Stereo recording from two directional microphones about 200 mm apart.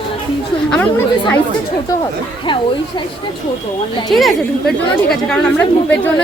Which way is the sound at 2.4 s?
25° left (ahead or behind).